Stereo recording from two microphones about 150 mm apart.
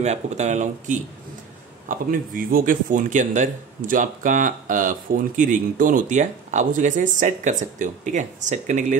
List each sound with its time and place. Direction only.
0.0 s speech: 50° right (ahead or behind)
1.9 s speech: 65° right (ahead or behind)